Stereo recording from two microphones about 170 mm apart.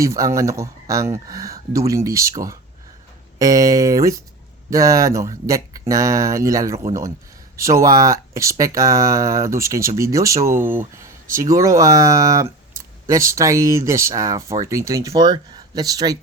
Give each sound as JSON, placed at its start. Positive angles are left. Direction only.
{"t": 0.0, "sound": "speech", "side_deg": -20}
{"t": 3.3, "sound": "speech", "side_deg": -20}